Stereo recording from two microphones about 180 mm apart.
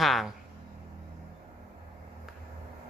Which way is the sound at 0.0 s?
Centre (ahead or behind).